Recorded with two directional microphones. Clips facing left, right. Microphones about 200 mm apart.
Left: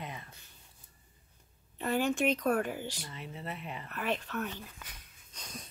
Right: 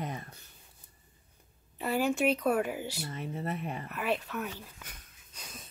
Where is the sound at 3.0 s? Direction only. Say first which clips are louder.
Right 7 dB; 45° right (ahead or behind).